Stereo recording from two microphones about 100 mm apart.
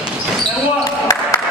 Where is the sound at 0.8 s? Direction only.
40° left (ahead or behind).